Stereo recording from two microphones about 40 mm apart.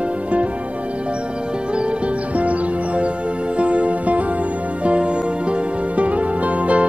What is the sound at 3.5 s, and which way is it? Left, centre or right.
Music, right.